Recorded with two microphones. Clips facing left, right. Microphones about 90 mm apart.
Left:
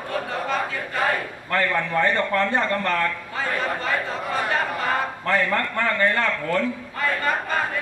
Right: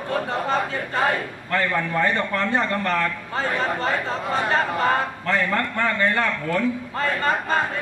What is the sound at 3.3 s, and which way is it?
A man's voice, 30° right (ahead or behind).